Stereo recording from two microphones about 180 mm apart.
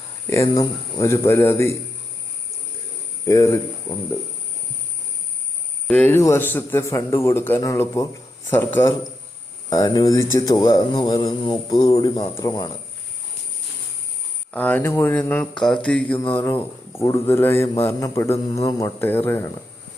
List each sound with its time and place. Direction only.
0.3 s speech: 15° left (ahead or behind)
3.2 s speech: 15° left (ahead or behind)
5.9 s speech: 10° left (ahead or behind)
14.5 s speech: 10° left (ahead or behind)